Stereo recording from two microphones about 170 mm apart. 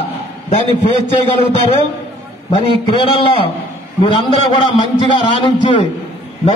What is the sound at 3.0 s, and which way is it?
A man's voice, 30° left (ahead or behind).